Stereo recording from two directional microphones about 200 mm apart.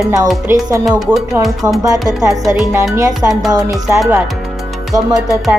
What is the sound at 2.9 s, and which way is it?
Speech, 15° right (ahead or behind).